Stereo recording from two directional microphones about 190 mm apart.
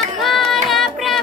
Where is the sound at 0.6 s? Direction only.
Centre (ahead or behind).